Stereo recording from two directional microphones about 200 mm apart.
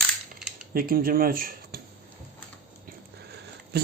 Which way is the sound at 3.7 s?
55° right (ahead or behind).